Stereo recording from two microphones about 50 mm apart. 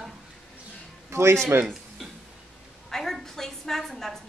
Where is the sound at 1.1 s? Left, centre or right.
Right.